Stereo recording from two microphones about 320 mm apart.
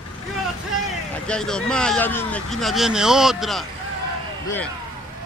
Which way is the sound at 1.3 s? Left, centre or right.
Centre.